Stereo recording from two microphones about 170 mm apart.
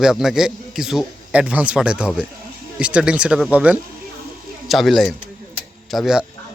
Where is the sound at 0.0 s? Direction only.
Centre (ahead or behind).